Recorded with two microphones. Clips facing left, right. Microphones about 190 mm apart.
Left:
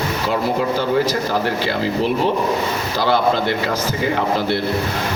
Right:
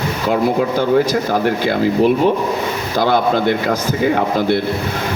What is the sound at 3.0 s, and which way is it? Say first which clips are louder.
Speech: right 2 dB; 50° right (ahead or behind).